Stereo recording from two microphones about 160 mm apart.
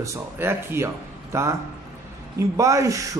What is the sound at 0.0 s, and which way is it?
A man's voice, 15° right (ahead or behind).